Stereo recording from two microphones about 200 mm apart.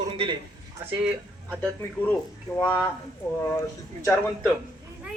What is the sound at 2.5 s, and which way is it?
Speech, 10° left (ahead or behind).